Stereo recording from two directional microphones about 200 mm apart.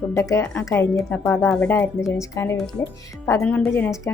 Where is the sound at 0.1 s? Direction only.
15° left (ahead or behind).